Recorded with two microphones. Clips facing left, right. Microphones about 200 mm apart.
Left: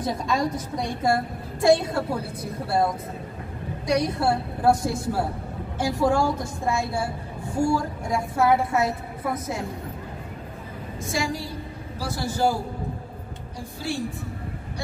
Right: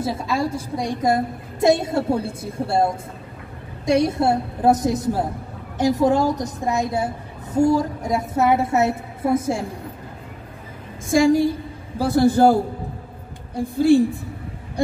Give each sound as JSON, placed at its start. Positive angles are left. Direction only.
{"t": 0.0, "sound": "a woman's voice", "side_deg": -5}
{"t": 11.1, "sound": "a woman's voice", "side_deg": -50}
{"t": 13.6, "sound": "a man's voice", "side_deg": -55}